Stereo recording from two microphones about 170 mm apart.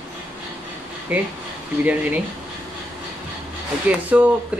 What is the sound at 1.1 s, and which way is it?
Speech, 5° right (ahead or behind).